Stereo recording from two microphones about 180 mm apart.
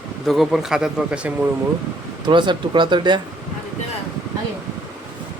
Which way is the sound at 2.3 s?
25° right (ahead or behind).